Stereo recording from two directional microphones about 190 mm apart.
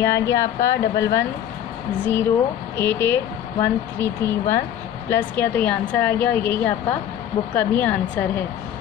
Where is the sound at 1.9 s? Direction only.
10° left (ahead or behind).